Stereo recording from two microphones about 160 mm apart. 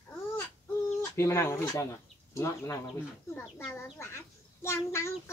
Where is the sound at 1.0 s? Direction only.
15° left (ahead or behind).